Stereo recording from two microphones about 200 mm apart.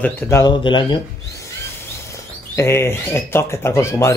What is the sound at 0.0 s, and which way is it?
Speech, 15° left (ahead or behind).